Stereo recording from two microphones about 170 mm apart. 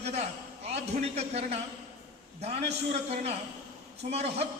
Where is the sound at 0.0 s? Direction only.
40° right (ahead or behind).